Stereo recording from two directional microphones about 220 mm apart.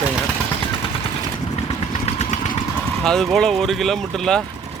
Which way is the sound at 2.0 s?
30° left (ahead or behind).